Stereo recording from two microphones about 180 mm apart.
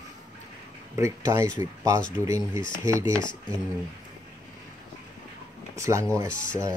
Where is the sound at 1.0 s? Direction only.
15° right (ahead or behind).